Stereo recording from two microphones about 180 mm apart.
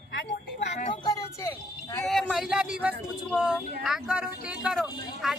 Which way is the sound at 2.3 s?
5° right (ahead or behind).